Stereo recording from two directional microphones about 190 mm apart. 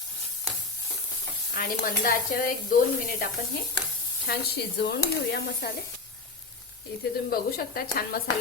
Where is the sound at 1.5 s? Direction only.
45° left (ahead or behind).